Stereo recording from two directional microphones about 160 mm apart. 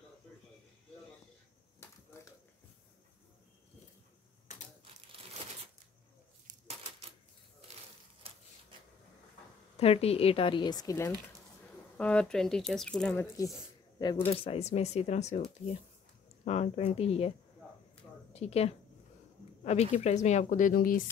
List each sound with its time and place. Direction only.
8.2 s a sound: 35° right (ahead or behind)
9.8 s speech: 40° left (ahead or behind); by 11.1 s 20° left (ahead or behind)
12.0 s speech: 5° left (ahead or behind)
14.2 s speech: 35° left (ahead or behind)
16.4 s speech: 40° left (ahead or behind)
18.3 s a woman's voice: 40° left (ahead or behind); by 21.0 s 60° left (ahead or behind)